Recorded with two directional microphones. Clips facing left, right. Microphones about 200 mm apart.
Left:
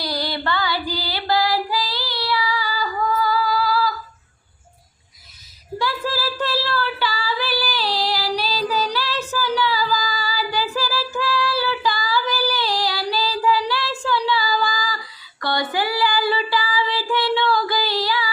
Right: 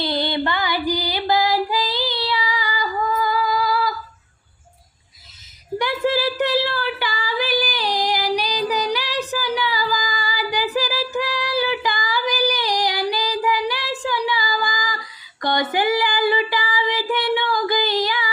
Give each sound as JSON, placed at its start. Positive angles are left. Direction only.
{"t": 0.0, "sound": "female singing", "side_deg": -25}
{"t": 5.8, "sound": "female singing", "side_deg": -20}